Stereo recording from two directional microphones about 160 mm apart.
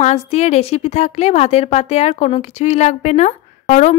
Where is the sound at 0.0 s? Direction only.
45° left (ahead or behind).